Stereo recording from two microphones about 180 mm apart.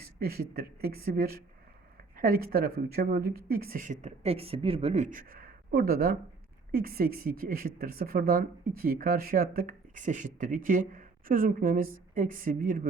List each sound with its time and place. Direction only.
0.0 s speech: 60° right (ahead or behind)